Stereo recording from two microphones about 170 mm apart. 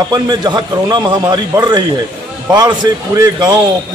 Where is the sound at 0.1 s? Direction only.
25° right (ahead or behind).